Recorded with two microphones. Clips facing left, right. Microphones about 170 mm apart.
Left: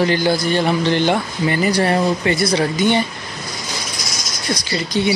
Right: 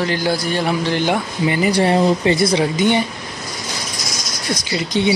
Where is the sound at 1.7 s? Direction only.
25° right (ahead or behind).